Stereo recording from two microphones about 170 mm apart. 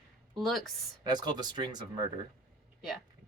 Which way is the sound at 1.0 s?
25° right (ahead or behind).